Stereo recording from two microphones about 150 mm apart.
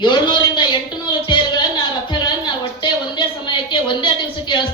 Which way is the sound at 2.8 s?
30° left (ahead or behind).